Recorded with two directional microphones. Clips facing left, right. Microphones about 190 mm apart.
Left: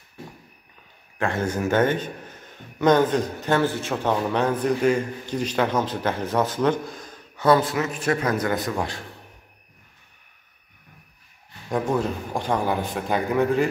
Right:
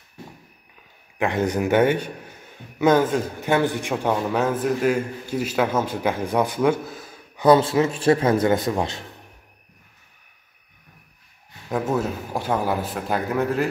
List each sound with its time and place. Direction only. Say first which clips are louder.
1.1 s a man's voice: right 3 dB; 15° right (ahead or behind)
11.7 s a man's voice: even; 5° right (ahead or behind)